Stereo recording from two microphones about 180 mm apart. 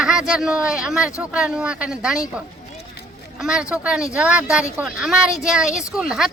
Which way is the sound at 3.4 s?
5° right (ahead or behind).